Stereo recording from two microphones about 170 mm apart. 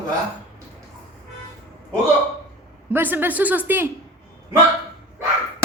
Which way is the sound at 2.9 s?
10° right (ahead or behind).